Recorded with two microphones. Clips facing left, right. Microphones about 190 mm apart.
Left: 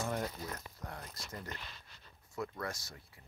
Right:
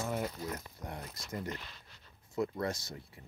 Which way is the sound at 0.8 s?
20° right (ahead or behind).